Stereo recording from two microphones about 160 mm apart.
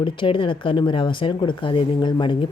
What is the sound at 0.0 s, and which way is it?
Speech, 30° left (ahead or behind).